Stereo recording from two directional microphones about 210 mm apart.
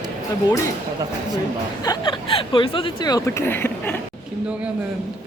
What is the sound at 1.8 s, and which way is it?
Speech, 20° left (ahead or behind).